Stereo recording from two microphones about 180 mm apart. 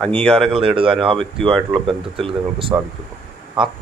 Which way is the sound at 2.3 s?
30° right (ahead or behind).